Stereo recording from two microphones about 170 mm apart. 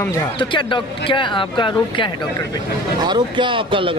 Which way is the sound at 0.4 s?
30° left (ahead or behind).